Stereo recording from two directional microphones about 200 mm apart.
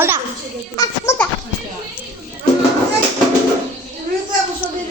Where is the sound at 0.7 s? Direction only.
15° left (ahead or behind).